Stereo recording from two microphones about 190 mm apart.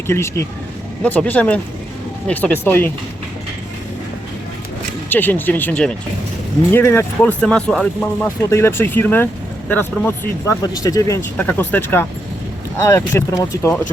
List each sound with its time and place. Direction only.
0.1 s speech: 15° left (ahead or behind)
5.0 s speech: 10° left (ahead or behind)